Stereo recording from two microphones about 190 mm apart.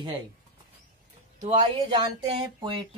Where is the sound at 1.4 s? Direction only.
25° right (ahead or behind).